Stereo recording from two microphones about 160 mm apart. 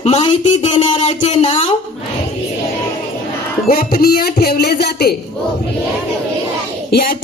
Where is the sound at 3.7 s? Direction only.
70° left (ahead or behind); by 5.1 s 85° left.